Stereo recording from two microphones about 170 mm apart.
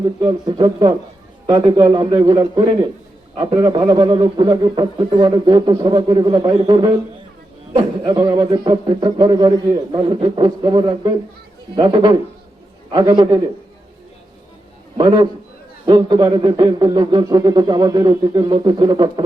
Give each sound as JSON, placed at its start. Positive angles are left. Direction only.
{"t": 0.0, "sound": "a man's voice", "side_deg": -25}
{"t": 14.9, "sound": "a man's voice", "side_deg": -25}